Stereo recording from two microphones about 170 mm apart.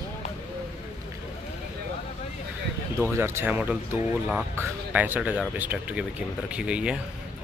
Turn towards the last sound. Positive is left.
turn(degrees=-5)  # may be behind; listen again after turning